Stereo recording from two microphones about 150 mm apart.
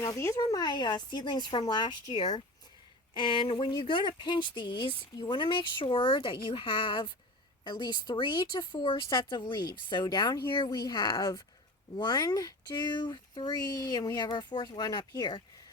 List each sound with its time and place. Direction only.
0.0 s speech: 20° left (ahead or behind)